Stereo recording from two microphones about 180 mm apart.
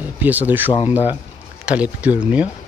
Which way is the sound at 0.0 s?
10° right (ahead or behind).